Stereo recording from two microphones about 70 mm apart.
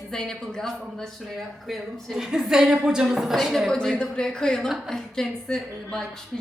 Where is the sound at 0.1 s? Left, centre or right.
Centre.